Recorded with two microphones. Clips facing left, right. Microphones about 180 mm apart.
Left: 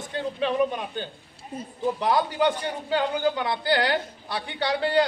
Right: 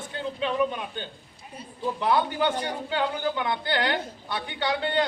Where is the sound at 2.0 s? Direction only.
35° left (ahead or behind).